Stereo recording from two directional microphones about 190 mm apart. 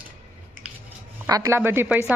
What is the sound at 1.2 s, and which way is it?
Speech, 15° right (ahead or behind).